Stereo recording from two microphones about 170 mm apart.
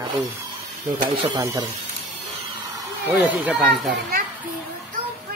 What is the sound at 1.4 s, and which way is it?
Speech, 20° right (ahead or behind).